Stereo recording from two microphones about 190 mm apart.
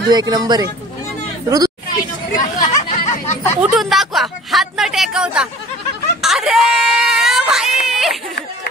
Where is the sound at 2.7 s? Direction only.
40° left (ahead or behind).